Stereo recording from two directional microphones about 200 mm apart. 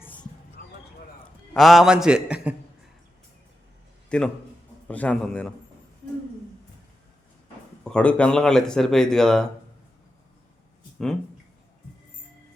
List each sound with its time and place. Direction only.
1.5 s speech: centre (ahead or behind)
4.1 s a man's voice: 5° left (ahead or behind)
7.9 s speech: 5° left (ahead or behind)